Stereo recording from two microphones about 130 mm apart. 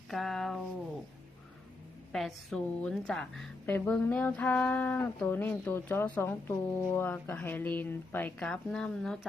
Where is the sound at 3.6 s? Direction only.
15° left (ahead or behind).